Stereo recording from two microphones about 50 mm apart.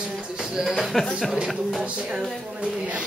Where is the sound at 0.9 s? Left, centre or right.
Centre.